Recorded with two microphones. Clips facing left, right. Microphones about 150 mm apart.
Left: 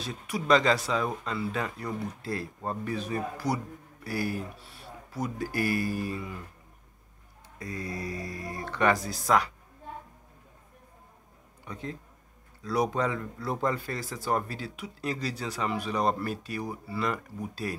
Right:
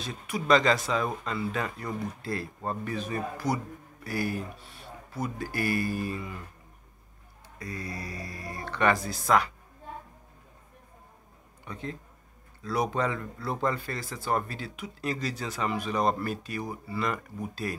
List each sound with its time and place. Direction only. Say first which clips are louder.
0.0 s speech: even; 5° left (ahead or behind)
7.5 s speech: left 2 dB; 20° left (ahead or behind)
11.7 s speech: even; 10° left (ahead or behind)